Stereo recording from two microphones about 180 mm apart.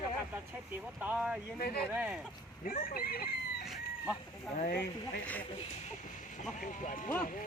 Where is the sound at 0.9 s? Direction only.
10° right (ahead or behind).